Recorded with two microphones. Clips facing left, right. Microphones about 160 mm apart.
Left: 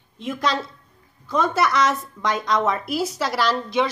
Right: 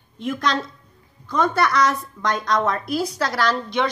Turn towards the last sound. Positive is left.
turn(degrees=5)  # may be behind; listen again after turning